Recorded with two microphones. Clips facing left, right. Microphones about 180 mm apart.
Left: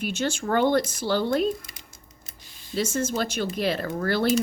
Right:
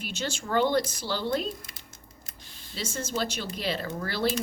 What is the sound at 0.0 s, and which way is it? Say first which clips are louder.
Speech: left 7 dB; 50° left (ahead or behind).